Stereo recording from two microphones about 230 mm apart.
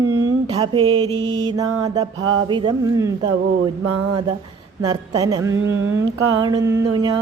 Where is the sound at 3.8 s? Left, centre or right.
Right.